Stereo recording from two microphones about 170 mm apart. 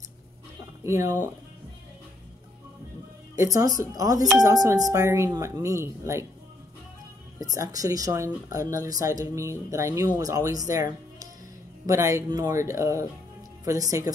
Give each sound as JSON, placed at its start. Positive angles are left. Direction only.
{"t": 0.8, "sound": "speech", "side_deg": -15}
{"t": 3.3, "sound": "speech", "side_deg": -20}
{"t": 7.5, "sound": "speech", "side_deg": -20}